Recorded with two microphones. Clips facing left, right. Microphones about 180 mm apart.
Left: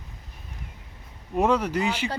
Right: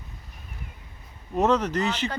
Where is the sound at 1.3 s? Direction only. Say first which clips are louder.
Even; 10° left (ahead or behind).